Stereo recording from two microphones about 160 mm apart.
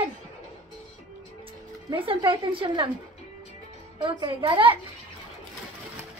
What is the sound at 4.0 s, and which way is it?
Speech, 30° right (ahead or behind).